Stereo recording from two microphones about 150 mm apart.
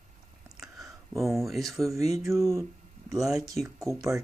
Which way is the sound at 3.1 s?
Centre (ahead or behind).